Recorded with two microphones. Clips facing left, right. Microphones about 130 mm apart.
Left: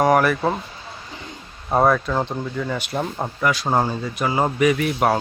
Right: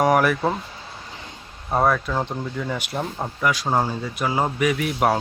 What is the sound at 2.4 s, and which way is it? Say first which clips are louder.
Speech: left 2 dB; 10° right (ahead or behind).